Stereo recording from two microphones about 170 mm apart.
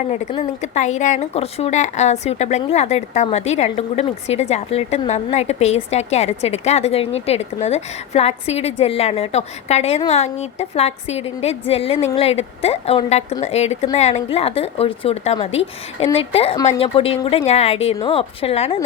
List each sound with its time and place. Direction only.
0.6 s a woman's voice: 45° left (ahead or behind)